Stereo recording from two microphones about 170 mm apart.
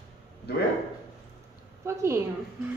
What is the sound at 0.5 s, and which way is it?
Speech, 75° left (ahead or behind).